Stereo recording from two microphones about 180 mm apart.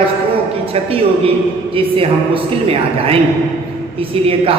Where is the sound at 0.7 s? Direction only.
30° right (ahead or behind).